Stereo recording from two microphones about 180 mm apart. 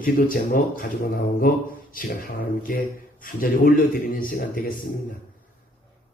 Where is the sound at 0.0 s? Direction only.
50° left (ahead or behind).